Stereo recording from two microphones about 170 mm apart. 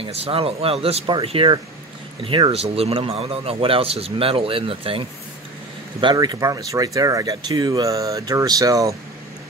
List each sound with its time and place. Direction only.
0.0 s a man's voice: 35° right (ahead or behind)